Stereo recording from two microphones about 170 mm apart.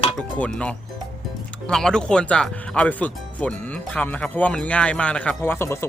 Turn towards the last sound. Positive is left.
turn(degrees=15)  # may be behind; listen again after turning